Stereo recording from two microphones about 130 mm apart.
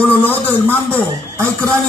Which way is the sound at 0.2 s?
15° left (ahead or behind).